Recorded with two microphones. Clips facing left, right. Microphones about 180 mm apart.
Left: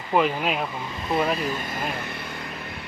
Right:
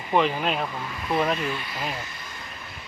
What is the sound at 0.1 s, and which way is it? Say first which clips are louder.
Speech: left 1 dB; 5° left (ahead or behind).